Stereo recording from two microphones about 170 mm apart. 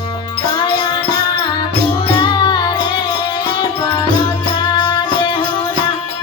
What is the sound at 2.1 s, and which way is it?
Music, 25° left (ahead or behind).